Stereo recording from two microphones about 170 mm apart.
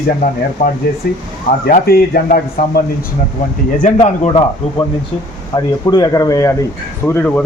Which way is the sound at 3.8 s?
40° left (ahead or behind).